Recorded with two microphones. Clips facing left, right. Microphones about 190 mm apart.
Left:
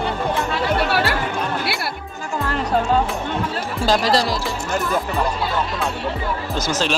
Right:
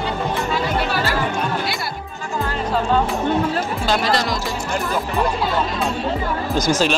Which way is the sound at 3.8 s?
35° left (ahead or behind).